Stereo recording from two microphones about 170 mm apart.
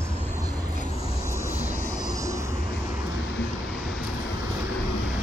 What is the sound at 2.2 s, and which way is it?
Vehicle, 20° right (ahead or behind).